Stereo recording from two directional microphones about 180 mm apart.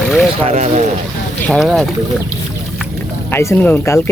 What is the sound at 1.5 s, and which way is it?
Speech, centre (ahead or behind).